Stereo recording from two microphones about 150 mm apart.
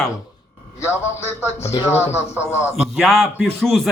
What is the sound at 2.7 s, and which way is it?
A man's voice, centre (ahead or behind).